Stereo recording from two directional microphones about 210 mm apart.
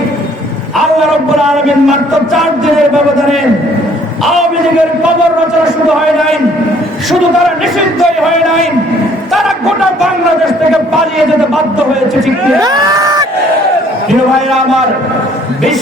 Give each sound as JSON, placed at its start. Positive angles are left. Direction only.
{"t": 1.4, "sound": "speech", "side_deg": 0}
{"t": 9.3, "sound": "speech", "side_deg": 0}
{"t": 12.5, "sound": "speech", "side_deg": -20}